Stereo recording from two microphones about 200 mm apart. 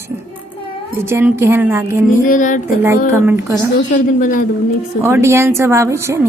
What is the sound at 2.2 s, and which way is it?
Speech, 40° left (ahead or behind).